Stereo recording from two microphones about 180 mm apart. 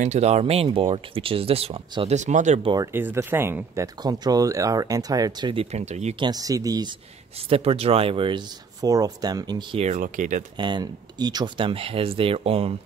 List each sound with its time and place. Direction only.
0.0 s speech: 40° right (ahead or behind)
2.7 s speech: 15° right (ahead or behind); by 6.2 s 40° right (ahead or behind)
6.2 s speech: 20° right (ahead or behind)
7.4 s speech: 35° right (ahead or behind)
10.6 s speech: 25° right (ahead or behind)